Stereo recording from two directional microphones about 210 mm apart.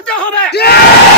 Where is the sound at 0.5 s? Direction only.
50° left (ahead or behind).